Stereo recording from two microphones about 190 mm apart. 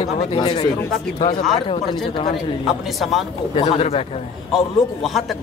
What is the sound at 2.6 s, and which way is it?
Speech, centre (ahead or behind).